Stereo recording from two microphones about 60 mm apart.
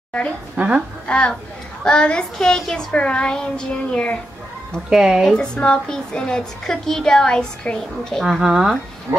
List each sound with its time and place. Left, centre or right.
0.6 s a woman's voice: right
1.0 s a woman's voice: centre
4.8 s speech: centre
5.3 s a woman's voice: centre